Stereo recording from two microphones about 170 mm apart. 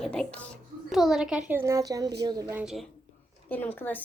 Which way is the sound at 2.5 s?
Centre (ahead or behind).